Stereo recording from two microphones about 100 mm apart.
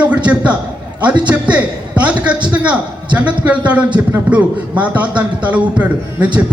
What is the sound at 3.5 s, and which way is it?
A man's voice, 15° right (ahead or behind).